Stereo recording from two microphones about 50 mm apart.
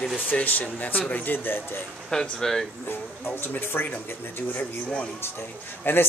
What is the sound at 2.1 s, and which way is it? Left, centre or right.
Speech, centre.